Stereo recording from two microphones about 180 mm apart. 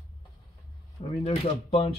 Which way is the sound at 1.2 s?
30° left (ahead or behind).